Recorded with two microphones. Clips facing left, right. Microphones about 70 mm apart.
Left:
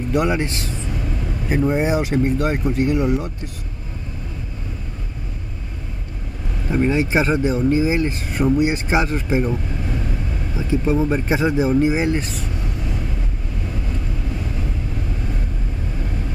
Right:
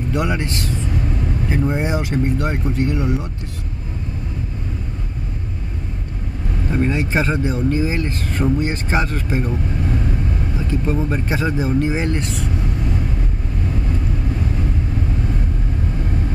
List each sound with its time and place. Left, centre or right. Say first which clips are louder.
0.1 s speech: left 3 dB; centre
1.7 s speech: left 2 dB; centre
6.7 s speech: left 2 dB; centre
10.7 s speech: left 4 dB; centre